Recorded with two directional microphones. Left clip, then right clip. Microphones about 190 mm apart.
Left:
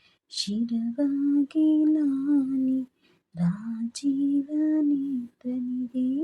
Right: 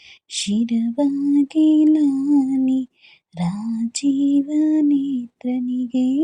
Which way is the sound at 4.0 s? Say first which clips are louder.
Right 7 dB; 20° right (ahead or behind).